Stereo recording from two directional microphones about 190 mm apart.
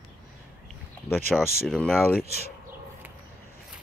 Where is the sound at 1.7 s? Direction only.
5° left (ahead or behind).